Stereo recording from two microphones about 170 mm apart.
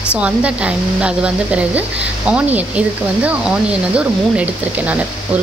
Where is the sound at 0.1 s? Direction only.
5° right (ahead or behind).